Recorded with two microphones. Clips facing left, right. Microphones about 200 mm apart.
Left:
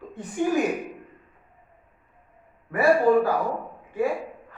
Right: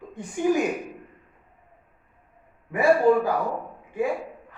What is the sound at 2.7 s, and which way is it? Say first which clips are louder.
Speech: even; 15° right (ahead or behind).